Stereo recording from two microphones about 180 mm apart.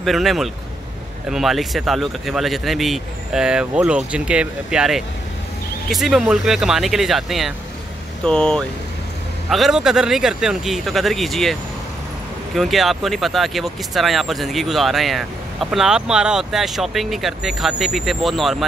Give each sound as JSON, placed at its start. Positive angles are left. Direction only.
{"t": 0.0, "sound": "speech", "side_deg": 0}
{"t": 12.5, "sound": "speech", "side_deg": 0}